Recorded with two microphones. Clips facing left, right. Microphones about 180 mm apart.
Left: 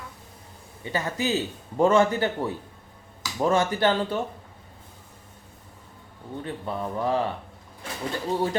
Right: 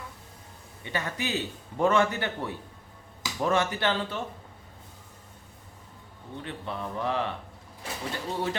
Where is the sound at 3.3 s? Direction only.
40° left (ahead or behind).